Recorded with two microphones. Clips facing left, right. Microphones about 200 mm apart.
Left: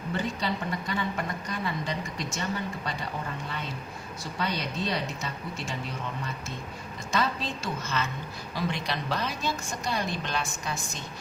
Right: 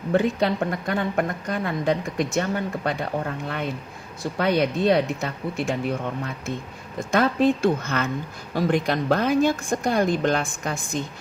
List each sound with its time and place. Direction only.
0.1 s a woman's voice: 55° right (ahead or behind)